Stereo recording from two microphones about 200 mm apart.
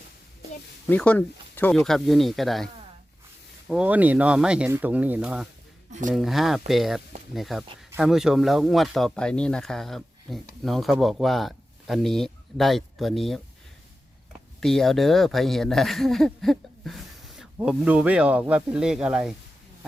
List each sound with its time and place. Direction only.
0.9 s speech: 10° left (ahead or behind)
3.7 s speech: 5° right (ahead or behind)
5.9 s speech: 40° right (ahead or behind)
6.1 s speech: centre (ahead or behind)
14.6 s speech: centre (ahead or behind)